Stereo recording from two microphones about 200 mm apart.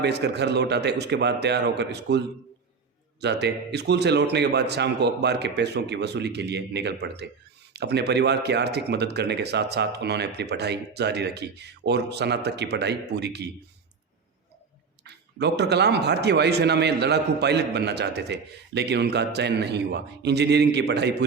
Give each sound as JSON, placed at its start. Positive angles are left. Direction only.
{"t": 0.0, "sound": "a man's voice", "side_deg": -55}
{"t": 15.0, "sound": "a man's voice", "side_deg": -55}